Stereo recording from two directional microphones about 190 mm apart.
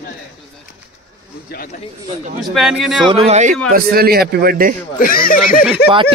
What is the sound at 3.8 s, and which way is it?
Speech, 55° right (ahead or behind).